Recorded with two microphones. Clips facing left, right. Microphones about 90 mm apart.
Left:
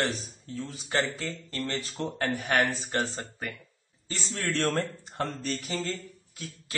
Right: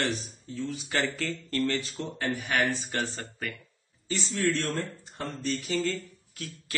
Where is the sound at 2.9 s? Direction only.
25° left (ahead or behind).